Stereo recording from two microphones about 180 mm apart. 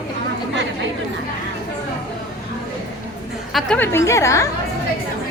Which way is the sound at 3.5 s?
5° left (ahead or behind).